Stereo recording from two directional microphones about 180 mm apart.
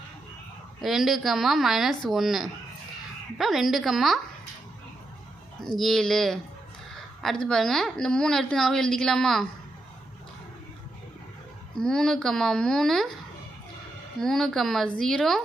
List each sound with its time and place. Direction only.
0.8 s a woman's voice: centre (ahead or behind)
5.7 s a woman's voice: centre (ahead or behind)
11.8 s a woman's voice: 5° left (ahead or behind)
14.2 s a woman's voice: centre (ahead or behind)